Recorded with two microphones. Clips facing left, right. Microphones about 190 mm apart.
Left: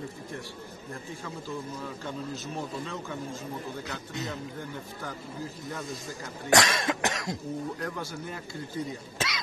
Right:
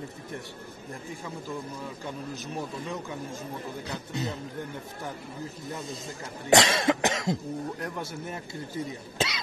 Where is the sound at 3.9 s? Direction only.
30° right (ahead or behind).